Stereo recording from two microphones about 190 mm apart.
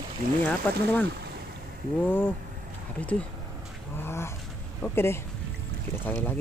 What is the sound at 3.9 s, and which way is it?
Dog, 10° left (ahead or behind).